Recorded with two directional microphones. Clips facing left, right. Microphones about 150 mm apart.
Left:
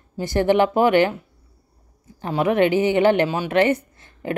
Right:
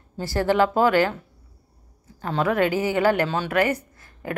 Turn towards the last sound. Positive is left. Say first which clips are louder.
# left 4 dB
turn(degrees=25)  # may be behind; listen again after turning